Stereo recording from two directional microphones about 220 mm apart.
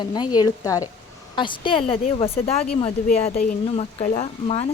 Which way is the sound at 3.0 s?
40° left (ahead or behind).